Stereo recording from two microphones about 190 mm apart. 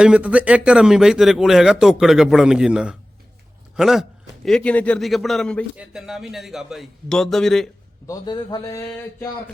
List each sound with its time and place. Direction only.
0.0 s speech: 5° right (ahead or behind)
8.0 s a man's voice: 20° left (ahead or behind)